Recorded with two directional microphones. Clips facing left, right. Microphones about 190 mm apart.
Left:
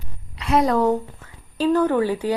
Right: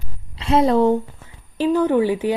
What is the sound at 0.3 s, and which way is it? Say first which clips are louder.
A woman's voice: right 3 dB; 30° right (ahead or behind).